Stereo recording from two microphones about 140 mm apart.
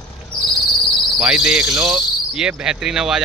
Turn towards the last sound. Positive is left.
turn(degrees=-5)  # may be behind; listen again after turning